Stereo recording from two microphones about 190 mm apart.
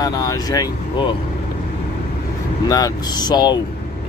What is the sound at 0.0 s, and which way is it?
Speech, 20° left (ahead or behind).